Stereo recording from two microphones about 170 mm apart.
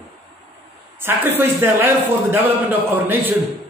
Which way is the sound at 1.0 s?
10° right (ahead or behind).